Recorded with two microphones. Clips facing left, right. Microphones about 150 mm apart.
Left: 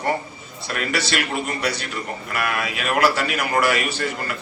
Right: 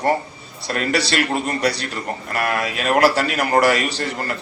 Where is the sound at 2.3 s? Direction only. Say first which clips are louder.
Right 3 dB; 35° right (ahead or behind).